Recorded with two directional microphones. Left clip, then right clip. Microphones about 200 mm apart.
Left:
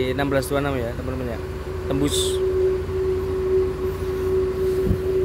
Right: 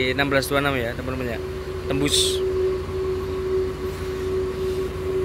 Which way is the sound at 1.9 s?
15° left (ahead or behind).